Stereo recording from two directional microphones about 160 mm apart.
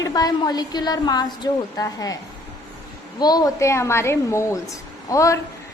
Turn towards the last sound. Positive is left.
turn(degrees=20)  # may be behind; listen again after turning